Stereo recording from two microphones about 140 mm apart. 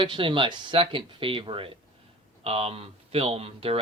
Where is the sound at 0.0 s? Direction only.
35° right (ahead or behind).